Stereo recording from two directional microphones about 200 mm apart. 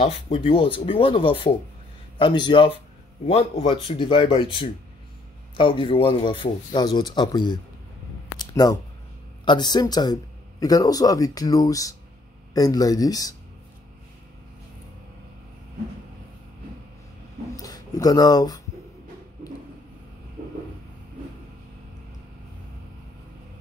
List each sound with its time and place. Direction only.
0.0 s speech: 30° left (ahead or behind)
5.6 s speech: 25° left (ahead or behind)
8.4 s a sound: 20° left (ahead or behind)
9.4 s speech: 20° left (ahead or behind)
17.6 s speech: 20° left (ahead or behind)